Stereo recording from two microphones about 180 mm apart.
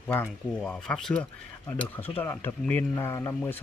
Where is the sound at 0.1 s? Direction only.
10° left (ahead or behind).